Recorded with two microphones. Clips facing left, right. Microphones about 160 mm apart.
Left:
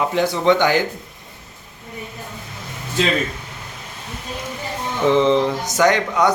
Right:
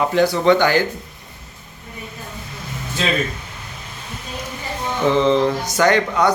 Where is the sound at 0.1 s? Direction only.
20° left (ahead or behind).